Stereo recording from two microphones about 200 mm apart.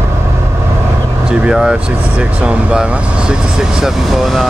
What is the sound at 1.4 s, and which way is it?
Speech, 5° right (ahead or behind).